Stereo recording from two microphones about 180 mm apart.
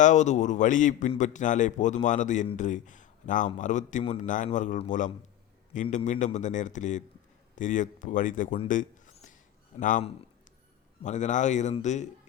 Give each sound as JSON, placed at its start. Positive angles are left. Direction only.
{"t": 0.0, "sound": "a man's voice", "side_deg": 40}
{"t": 8.6, "sound": "a sound", "side_deg": 45}
{"t": 9.7, "sound": "a man's voice", "side_deg": 45}
{"t": 11.0, "sound": "a man's voice", "side_deg": 40}